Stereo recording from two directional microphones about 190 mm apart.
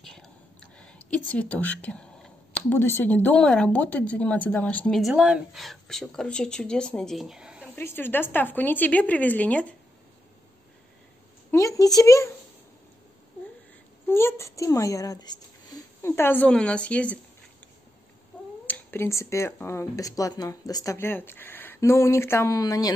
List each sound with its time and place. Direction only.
0.0 s whispering: 5° left (ahead or behind)
0.7 s speech: 5° left (ahead or behind)
7.7 s speech: 10° left (ahead or behind)
11.5 s a sound: 15° left (ahead or behind)
14.0 s speech: 15° left (ahead or behind)
18.7 s speech: 10° left (ahead or behind)